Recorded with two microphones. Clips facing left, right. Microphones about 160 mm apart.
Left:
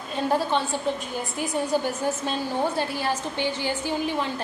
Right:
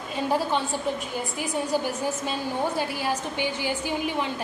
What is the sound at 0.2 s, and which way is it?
Speech, 10° right (ahead or behind).